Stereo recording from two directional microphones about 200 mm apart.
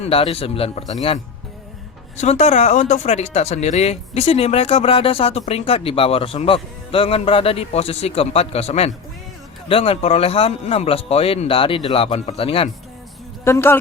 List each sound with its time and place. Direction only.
0.0 s speech: 30° left (ahead or behind)
2.2 s speech: 35° left (ahead or behind)
13.4 s a woman's voice: 10° left (ahead or behind)